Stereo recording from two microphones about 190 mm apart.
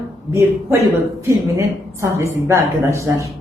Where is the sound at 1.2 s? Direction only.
15° right (ahead or behind).